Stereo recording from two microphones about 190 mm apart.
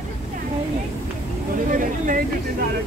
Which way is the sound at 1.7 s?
45° right (ahead or behind).